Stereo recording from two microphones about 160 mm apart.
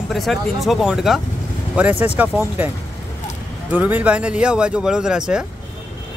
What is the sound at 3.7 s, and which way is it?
Speech, 10° right (ahead or behind).